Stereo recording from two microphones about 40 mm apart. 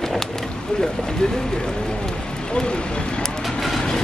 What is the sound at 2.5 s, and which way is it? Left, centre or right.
Vehicle, left.